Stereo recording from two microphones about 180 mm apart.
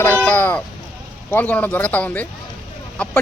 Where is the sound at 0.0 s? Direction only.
10° left (ahead or behind).